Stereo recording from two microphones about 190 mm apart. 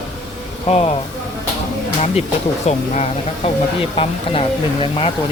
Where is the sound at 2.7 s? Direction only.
35° left (ahead or behind).